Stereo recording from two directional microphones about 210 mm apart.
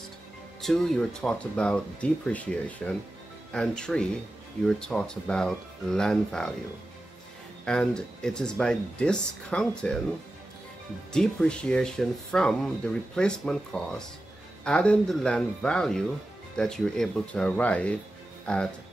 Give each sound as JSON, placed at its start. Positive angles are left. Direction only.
{"t": 0.6, "sound": "speech", "side_deg": 0}
{"t": 7.6, "sound": "speech", "side_deg": 5}
{"t": 11.1, "sound": "speech", "side_deg": 5}